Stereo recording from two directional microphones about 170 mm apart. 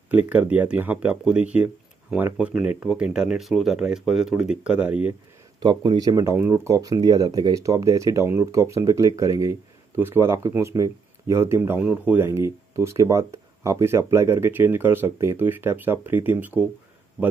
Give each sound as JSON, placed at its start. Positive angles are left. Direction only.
{"t": 0.1, "sound": "speech", "side_deg": -10}
{"t": 5.6, "sound": "speech", "side_deg": -30}
{"t": 17.2, "sound": "a man's voice", "side_deg": -30}